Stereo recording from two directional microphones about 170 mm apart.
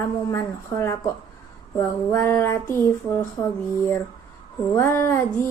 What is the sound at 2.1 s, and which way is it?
Music, 15° left (ahead or behind).